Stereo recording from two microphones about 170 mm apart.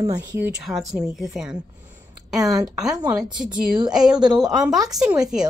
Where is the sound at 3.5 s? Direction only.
25° right (ahead or behind).